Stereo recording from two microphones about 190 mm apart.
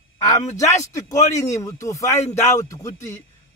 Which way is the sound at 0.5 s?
15° left (ahead or behind).